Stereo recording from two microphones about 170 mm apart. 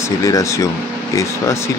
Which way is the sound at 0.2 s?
20° left (ahead or behind).